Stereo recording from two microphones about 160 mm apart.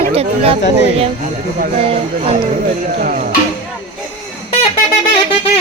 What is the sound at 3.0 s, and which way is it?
Speech, 60° right (ahead or behind).